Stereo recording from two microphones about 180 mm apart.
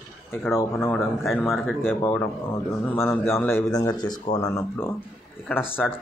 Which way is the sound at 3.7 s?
20° left (ahead or behind).